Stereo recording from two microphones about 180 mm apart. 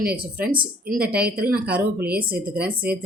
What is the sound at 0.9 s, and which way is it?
Speech, 5° right (ahead or behind).